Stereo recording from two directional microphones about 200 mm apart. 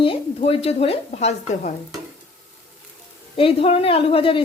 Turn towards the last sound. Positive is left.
turn(degrees=25)  # may be behind; listen again after turning